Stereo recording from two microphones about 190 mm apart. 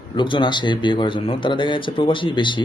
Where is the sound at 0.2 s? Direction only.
25° left (ahead or behind).